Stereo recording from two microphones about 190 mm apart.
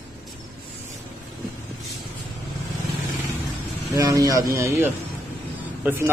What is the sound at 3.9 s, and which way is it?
Speech, 20° right (ahead or behind).